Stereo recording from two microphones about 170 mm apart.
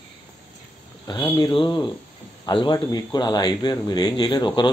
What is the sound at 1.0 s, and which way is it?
Speech, 25° left (ahead or behind).